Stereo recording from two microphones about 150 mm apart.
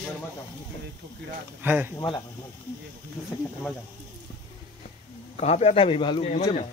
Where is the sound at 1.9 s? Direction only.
25° left (ahead or behind).